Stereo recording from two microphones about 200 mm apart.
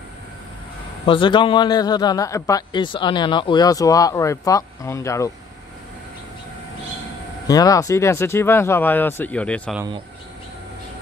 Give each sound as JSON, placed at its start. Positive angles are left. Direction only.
{"t": 1.0, "sound": "a man's voice", "side_deg": 25}
{"t": 7.4, "sound": "speech", "side_deg": 20}